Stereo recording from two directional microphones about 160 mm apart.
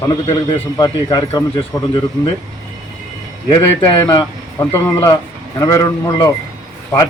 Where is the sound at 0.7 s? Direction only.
25° left (ahead or behind).